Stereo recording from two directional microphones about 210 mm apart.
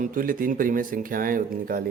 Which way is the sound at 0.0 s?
40° right (ahead or behind).